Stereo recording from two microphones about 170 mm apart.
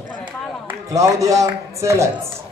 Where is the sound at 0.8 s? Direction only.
20° right (ahead or behind).